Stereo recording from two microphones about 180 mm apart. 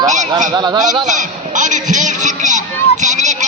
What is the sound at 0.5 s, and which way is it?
Speech, 25° right (ahead or behind).